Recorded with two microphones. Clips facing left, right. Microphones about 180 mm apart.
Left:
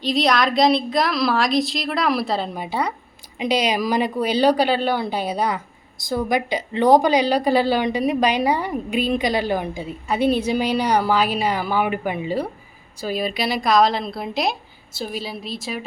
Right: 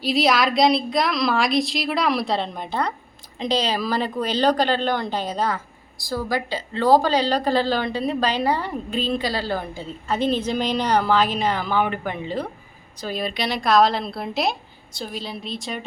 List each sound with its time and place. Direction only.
0.0 s a woman's voice: 5° right (ahead or behind)